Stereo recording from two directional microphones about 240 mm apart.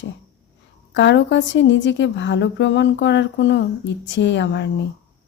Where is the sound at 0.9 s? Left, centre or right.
Left.